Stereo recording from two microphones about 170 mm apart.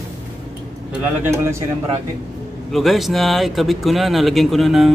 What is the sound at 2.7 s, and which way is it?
Speech, centre (ahead or behind).